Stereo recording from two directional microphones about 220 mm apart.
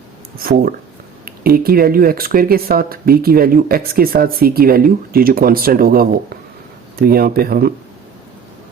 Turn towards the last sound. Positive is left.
turn(degrees=-45)  # may be behind; listen again after turning